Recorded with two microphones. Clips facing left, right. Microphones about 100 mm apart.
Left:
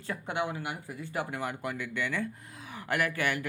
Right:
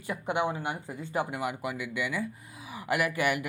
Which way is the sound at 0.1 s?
20° right (ahead or behind).